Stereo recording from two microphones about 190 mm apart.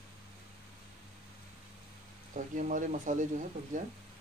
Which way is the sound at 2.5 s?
45° right (ahead or behind).